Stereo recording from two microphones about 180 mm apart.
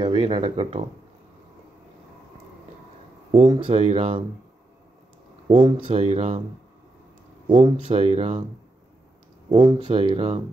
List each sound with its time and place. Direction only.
0.0 s speech: 25° right (ahead or behind)
3.5 s speech: 30° right (ahead or behind)
5.5 s speech: 25° right (ahead or behind)
7.4 s speech: 25° right (ahead or behind)
9.5 s speech: 25° right (ahead or behind)